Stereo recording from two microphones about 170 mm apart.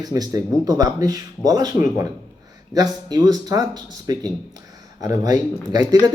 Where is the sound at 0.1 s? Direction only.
20° right (ahead or behind).